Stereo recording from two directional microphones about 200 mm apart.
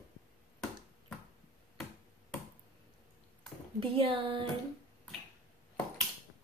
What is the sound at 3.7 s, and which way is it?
Speech, 25° right (ahead or behind).